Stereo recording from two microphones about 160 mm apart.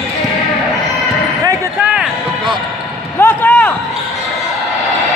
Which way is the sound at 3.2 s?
10° left (ahead or behind).